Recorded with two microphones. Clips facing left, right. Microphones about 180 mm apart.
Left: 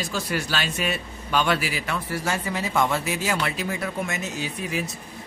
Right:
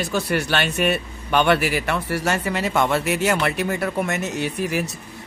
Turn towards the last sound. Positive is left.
turn(degrees=-70)  # may be behind; listen again after turning